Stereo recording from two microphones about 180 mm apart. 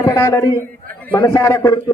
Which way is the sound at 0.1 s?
15° left (ahead or behind).